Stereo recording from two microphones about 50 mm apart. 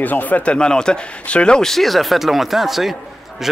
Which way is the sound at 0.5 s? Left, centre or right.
Centre.